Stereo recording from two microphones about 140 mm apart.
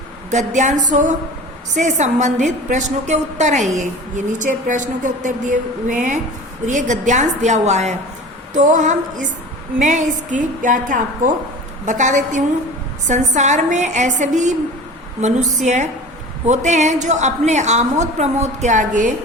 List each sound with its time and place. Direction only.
0.3 s a woman's voice: 60° right (ahead or behind)